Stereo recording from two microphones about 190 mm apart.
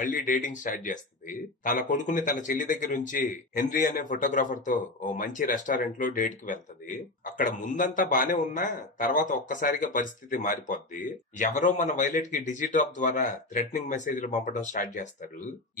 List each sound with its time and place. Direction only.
0.0 s a man's voice: 45° left (ahead or behind)